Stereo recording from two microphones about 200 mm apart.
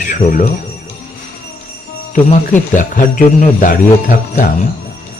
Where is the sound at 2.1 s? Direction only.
40° left (ahead or behind).